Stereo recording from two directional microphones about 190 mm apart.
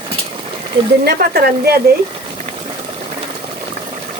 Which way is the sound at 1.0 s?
55° right (ahead or behind).